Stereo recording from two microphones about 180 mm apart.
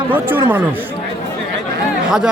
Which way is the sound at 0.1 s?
10° right (ahead or behind).